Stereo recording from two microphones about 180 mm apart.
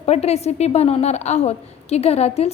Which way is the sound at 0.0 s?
35° left (ahead or behind).